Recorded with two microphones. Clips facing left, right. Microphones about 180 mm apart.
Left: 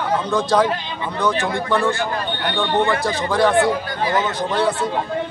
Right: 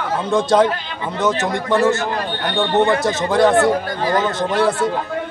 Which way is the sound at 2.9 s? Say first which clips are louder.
Right 3 dB; 20° right (ahead or behind).